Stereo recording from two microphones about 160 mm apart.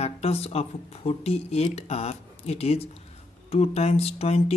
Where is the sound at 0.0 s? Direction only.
40° left (ahead or behind).